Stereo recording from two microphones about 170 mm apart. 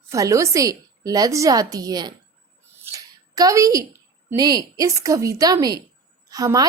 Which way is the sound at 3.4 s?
20° right (ahead or behind).